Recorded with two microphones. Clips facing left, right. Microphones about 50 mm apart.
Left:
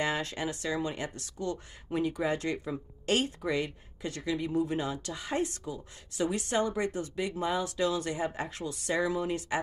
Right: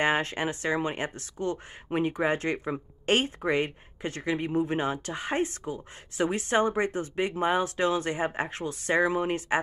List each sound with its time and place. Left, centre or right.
0.0 s speech: right